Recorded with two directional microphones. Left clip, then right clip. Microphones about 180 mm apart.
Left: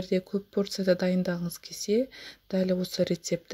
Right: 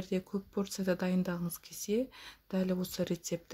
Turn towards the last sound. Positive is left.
turn(degrees=20)  # may be behind; listen again after turning